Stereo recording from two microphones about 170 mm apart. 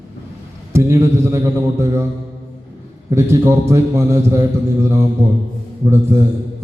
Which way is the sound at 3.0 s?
15° right (ahead or behind).